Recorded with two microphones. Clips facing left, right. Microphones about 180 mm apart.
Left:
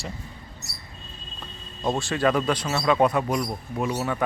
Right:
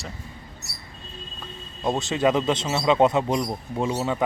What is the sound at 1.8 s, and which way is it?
Speech, 20° right (ahead or behind).